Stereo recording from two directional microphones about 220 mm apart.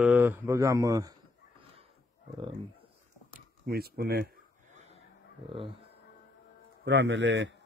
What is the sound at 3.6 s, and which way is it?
Speech, 45° right (ahead or behind).